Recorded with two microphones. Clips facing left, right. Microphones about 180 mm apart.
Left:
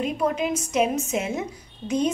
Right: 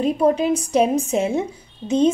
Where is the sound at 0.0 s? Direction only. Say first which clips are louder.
Right 7 dB; 30° right (ahead or behind).